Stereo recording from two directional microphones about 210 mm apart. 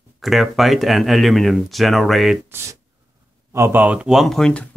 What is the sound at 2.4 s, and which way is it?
Speech, 10° right (ahead or behind).